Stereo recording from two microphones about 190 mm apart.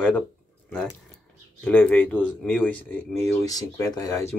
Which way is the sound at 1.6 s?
5° left (ahead or behind).